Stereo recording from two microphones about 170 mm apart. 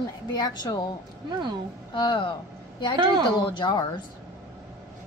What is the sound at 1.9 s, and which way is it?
Speech, 30° left (ahead or behind).